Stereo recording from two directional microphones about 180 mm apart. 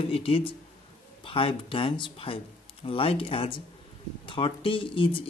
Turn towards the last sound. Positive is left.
turn(degrees=30)  # may be behind; listen again after turning